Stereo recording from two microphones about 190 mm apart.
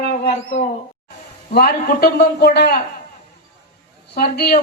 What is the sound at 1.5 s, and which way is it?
A man's voice, 55° left (ahead or behind).